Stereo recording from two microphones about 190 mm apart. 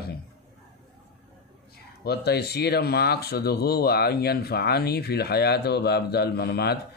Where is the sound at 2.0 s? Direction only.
60° left (ahead or behind).